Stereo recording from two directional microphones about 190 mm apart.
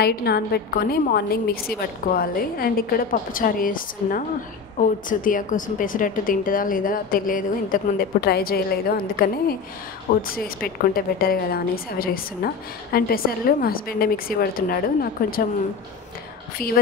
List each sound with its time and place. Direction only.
0.0 s a woman's voice: 55° left (ahead or behind)